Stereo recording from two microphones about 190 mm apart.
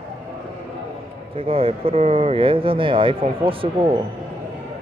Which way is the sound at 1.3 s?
30° right (ahead or behind).